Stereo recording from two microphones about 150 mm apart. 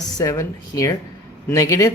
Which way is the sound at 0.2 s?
25° left (ahead or behind).